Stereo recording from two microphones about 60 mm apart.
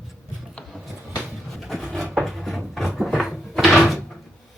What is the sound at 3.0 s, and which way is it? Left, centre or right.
Cupboard open or close, centre.